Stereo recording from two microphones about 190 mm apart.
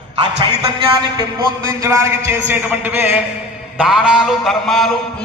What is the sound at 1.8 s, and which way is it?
A man's voice, 15° right (ahead or behind).